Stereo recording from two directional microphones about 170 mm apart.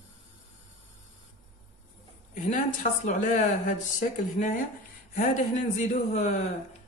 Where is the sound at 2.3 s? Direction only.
50° left (ahead or behind).